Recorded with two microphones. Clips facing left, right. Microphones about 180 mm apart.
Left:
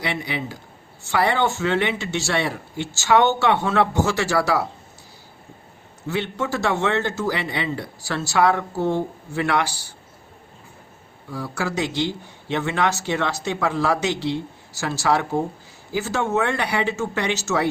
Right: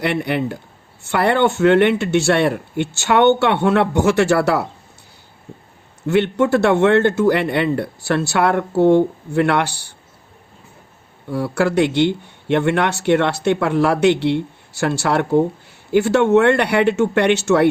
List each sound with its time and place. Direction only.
0.0 s speech: 60° right (ahead or behind)
6.1 s speech: 60° right (ahead or behind)
11.3 s speech: 65° right (ahead or behind)